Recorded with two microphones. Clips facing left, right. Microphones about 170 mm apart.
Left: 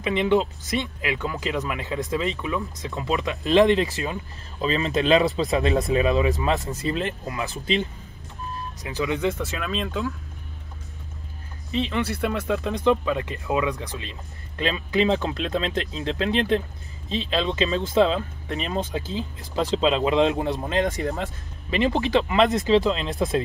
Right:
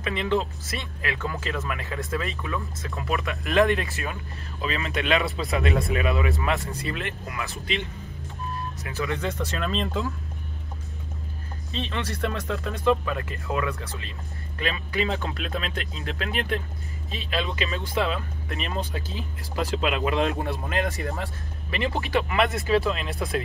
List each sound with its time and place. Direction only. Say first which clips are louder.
0.0 s speech: left 5 dB; 20° left (ahead or behind)
4.6 s speech: left 5 dB; 35° left (ahead or behind)
5.2 s speech: left 4 dB; 20° left (ahead or behind)
8.8 s speech: left 5 dB; 15° left (ahead or behind); by 10.1 s centre (ahead or behind)
11.7 s speech: left 6 dB; 15° left (ahead or behind)